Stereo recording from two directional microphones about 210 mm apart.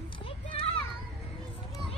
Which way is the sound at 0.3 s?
25° left (ahead or behind).